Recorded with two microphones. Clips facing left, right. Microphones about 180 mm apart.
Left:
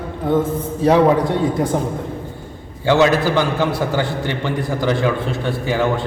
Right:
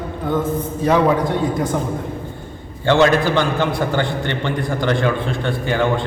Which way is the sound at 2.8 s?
5° left (ahead or behind).